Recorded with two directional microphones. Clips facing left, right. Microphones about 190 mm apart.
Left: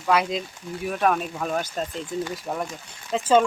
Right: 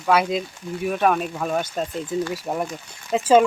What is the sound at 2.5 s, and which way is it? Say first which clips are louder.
Speech: right 3 dB; 15° right (ahead or behind).